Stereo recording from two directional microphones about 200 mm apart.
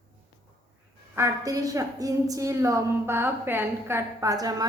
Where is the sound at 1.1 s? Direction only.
15° right (ahead or behind).